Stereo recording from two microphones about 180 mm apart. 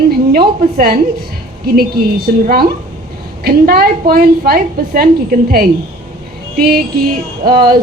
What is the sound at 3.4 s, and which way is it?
A woman's voice, 60° right (ahead or behind).